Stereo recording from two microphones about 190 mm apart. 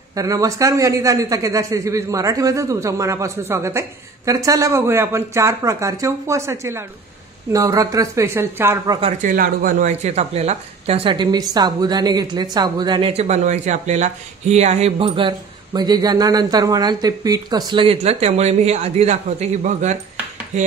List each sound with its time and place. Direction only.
0.1 s a man's voice: 20° right (ahead or behind)
9.2 s speech: 45° right (ahead or behind)
20.5 s a sound: 40° right (ahead or behind)